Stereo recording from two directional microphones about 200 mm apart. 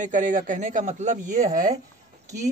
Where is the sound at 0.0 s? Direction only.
40° right (ahead or behind).